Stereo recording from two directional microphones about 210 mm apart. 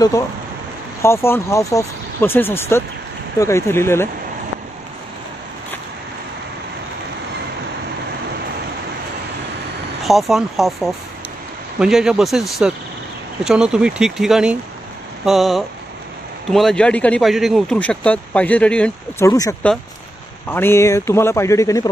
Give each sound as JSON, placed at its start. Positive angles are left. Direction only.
{"t": 1.0, "sound": "speech", "side_deg": 10}
{"t": 10.0, "sound": "speech", "side_deg": 0}